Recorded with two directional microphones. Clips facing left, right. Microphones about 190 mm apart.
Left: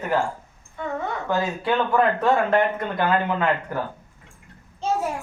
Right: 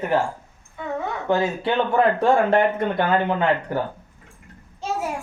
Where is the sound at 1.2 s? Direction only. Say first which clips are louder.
Right 3 dB; 25° right (ahead or behind).